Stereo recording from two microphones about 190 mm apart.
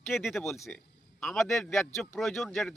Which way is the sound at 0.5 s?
15° left (ahead or behind).